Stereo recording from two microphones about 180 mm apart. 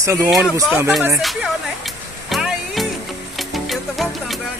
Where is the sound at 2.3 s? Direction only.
Centre (ahead or behind).